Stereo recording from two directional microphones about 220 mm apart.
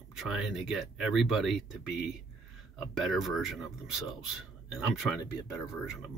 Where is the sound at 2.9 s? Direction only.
Centre (ahead or behind).